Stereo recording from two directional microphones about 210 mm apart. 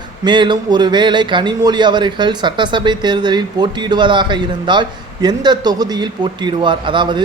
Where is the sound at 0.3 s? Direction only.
20° right (ahead or behind).